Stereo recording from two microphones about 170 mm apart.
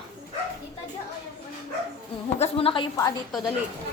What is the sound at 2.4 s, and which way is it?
Speech, 35° left (ahead or behind).